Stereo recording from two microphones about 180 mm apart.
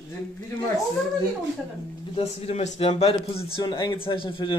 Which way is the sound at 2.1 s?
35° left (ahead or behind).